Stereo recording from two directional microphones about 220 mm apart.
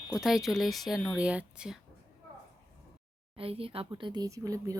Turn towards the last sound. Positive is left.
turn(degrees=-15)  # may be behind; listen again after turning